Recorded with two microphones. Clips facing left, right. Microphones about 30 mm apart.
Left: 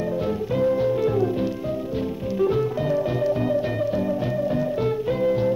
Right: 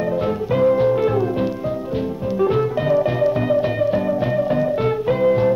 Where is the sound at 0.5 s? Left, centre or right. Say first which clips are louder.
Right 6 dB; right.